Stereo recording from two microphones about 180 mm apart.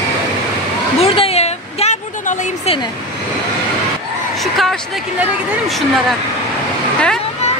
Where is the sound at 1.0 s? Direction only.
35° left (ahead or behind).